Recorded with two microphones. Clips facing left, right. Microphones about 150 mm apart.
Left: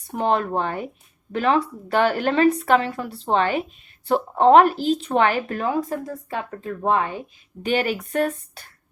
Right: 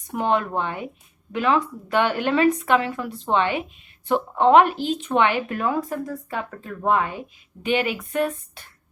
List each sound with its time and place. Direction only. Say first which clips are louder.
0.1 s speech: left 1 dB; 35° left (ahead or behind)
5.6 s speech: left 1 dB; 25° left (ahead or behind)
7.6 s speech: left 1 dB; 40° left (ahead or behind)